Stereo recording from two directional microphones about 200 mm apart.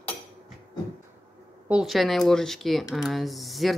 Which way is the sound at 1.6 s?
5° right (ahead or behind).